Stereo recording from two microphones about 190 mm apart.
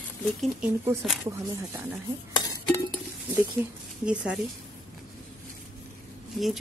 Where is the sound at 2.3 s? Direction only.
20° left (ahead or behind).